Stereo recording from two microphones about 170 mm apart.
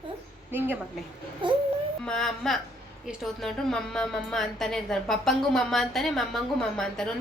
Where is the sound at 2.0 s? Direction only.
5° left (ahead or behind).